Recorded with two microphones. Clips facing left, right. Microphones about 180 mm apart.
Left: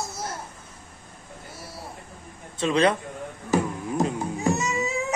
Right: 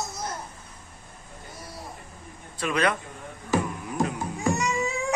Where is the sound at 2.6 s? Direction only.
25° left (ahead or behind).